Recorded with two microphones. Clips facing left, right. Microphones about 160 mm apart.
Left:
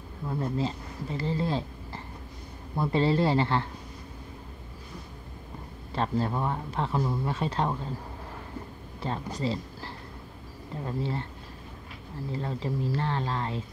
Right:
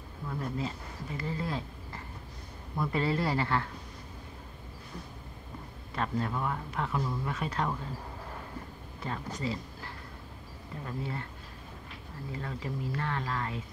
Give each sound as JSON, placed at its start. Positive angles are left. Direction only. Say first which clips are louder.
{"t": 0.3, "sound": "speech", "louder": "left 5 dB", "side_deg": 30}
{"t": 5.9, "sound": "speech", "louder": "left 4 dB", "side_deg": 30}
{"t": 9.0, "sound": "speech", "louder": "left 4 dB", "side_deg": 30}
{"t": 12.3, "sound": "speech", "louder": "left 5 dB", "side_deg": 30}